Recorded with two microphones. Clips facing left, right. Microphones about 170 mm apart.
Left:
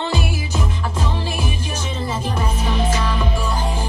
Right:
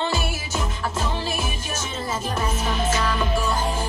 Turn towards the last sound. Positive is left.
turn(degrees=10)  # may be behind; listen again after turning